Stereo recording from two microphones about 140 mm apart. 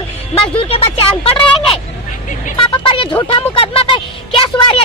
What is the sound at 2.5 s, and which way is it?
Speech, 40° left (ahead or behind).